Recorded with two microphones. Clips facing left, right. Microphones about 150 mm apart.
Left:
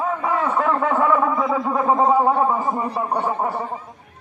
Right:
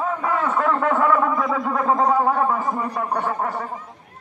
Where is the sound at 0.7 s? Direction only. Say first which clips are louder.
Even; 10° left (ahead or behind).